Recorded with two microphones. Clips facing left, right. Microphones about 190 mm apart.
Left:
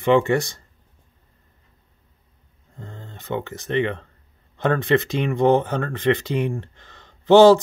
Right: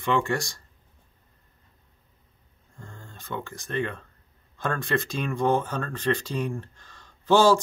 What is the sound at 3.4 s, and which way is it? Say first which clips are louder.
Speech: left 6 dB; 65° left (ahead or behind).